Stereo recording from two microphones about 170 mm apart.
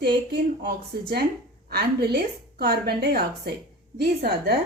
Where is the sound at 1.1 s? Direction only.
70° right (ahead or behind).